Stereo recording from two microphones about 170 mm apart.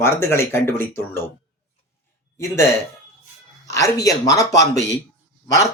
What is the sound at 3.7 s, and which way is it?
Speech, 20° left (ahead or behind).